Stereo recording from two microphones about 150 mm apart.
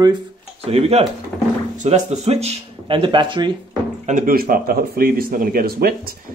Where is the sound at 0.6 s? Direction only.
45° right (ahead or behind).